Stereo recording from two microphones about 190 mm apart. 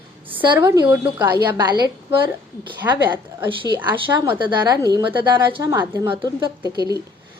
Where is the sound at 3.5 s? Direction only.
25° right (ahead or behind).